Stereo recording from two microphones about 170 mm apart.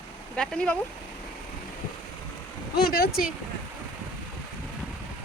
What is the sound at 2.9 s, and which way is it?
Speech, 60° left (ahead or behind).